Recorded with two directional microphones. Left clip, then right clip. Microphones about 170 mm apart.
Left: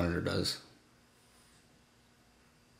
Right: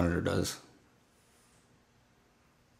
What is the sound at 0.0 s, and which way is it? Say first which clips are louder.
Speech: right 2 dB; 25° right (ahead or behind).